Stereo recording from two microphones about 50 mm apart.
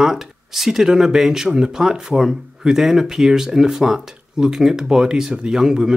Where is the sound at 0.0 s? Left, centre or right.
Centre.